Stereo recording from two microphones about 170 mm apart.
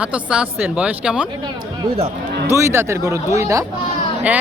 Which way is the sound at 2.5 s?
15° right (ahead or behind).